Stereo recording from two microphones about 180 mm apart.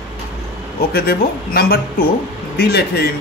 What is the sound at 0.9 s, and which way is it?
Speech, 60° left (ahead or behind).